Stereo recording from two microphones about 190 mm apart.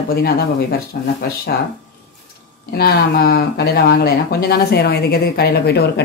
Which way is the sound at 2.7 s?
55° left (ahead or behind).